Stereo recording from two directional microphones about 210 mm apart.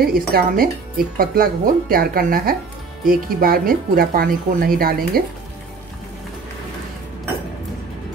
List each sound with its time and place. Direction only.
0.1 s speech: 45° right (ahead or behind)